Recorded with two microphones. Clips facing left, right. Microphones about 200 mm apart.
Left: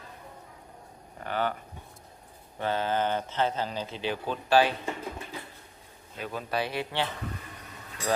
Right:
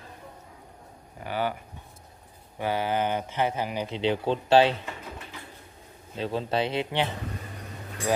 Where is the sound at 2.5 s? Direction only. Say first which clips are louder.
Right 1 dB; 10° right (ahead or behind).